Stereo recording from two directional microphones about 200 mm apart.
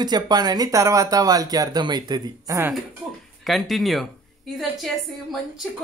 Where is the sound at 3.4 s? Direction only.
Centre (ahead or behind).